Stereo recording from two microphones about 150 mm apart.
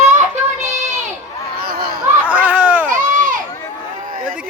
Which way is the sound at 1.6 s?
85° right.